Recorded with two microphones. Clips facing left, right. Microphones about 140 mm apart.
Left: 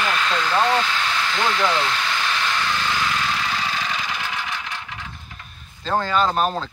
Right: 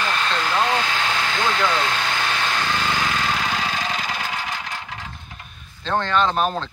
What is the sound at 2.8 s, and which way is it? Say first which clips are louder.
Vehicle: right 1 dB; 45° right (ahead or behind).